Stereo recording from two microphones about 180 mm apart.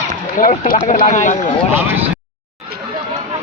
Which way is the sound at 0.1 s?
45° left (ahead or behind).